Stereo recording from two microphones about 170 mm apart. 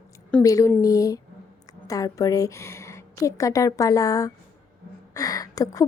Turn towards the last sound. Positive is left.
turn(degrees=20)  # may be behind; listen again after turning